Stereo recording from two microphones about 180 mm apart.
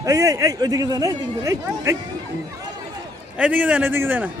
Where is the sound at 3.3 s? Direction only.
10° right (ahead or behind).